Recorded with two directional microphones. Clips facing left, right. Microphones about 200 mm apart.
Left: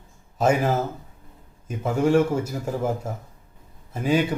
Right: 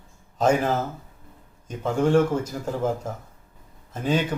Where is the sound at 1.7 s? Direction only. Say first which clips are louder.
Left 1 dB; 10° left (ahead or behind).